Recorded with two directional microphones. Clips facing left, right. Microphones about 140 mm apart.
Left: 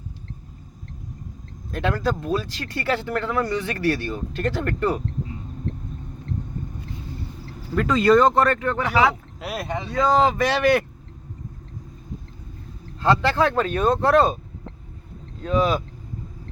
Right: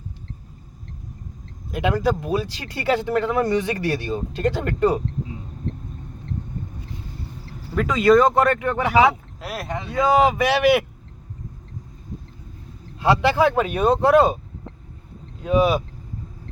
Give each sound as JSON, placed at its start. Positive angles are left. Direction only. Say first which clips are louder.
{"t": 1.7, "sound": "speech", "louder": "right 3 dB", "side_deg": -15}
{"t": 7.8, "sound": "speech", "louder": "right 1 dB", "side_deg": 0}
{"t": 9.4, "sound": "speech", "louder": "left 1 dB", "side_deg": 0}
{"t": 13.0, "sound": "speech", "louder": "right 2 dB", "side_deg": -10}
{"t": 15.4, "sound": "speech", "louder": "right 3 dB", "side_deg": -10}